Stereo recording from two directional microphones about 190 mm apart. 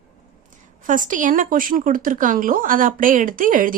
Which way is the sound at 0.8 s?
45° right (ahead or behind).